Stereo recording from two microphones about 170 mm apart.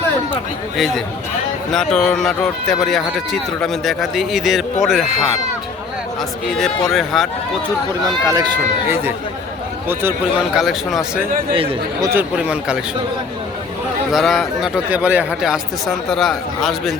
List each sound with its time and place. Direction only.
0.8 s speech: centre (ahead or behind)
6.5 s speech: centre (ahead or behind)
8.0 s speech: 25° right (ahead or behind)
9.9 s speech: 15° right (ahead or behind)
10.5 s speech: centre (ahead or behind)
12.1 s speech: 5° right (ahead or behind)
14.1 s speech: centre (ahead or behind)